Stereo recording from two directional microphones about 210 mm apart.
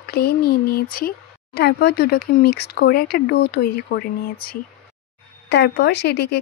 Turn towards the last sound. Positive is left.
turn(degrees=55)  # may be behind; listen again after turning